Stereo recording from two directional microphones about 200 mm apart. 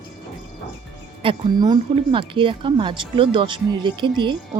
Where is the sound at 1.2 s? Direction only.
25° right (ahead or behind).